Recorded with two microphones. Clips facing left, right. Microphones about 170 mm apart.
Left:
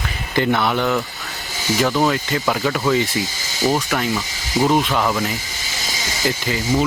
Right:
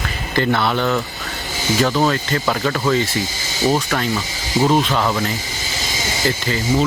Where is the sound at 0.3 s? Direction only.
15° left (ahead or behind).